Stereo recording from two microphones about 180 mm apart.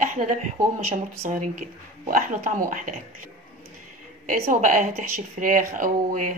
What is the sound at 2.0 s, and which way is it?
Speech, 50° right (ahead or behind).